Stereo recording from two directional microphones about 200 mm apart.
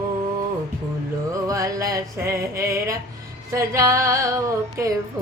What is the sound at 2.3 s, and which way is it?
Female singing, 15° right (ahead or behind).